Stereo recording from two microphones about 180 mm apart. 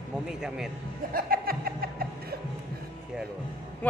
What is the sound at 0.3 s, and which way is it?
Speech, 5° right (ahead or behind).